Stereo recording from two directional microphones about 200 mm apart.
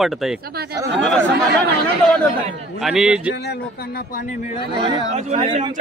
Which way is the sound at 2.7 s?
Centre (ahead or behind).